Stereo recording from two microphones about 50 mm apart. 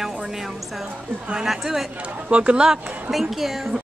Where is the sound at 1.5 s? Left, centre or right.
Centre.